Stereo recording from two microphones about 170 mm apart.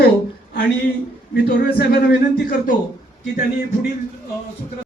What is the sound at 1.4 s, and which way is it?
Speech, 60° left (ahead or behind).